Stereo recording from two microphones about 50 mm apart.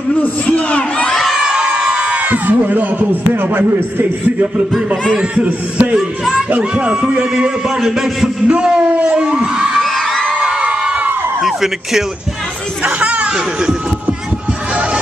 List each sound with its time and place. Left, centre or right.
0.5 s speech: left
1.2 s crowd: centre
1.7 s a sound: right
3.3 s a man's voice: right
5.1 s a man's voice: right
7.1 s a man's voice: centre
8.5 s a man's voice: right
9.7 s crowd: centre
10.3 s crowd: centre
11.4 s a man's voice: centre
12.8 s chatter: right
13.3 s speech: centre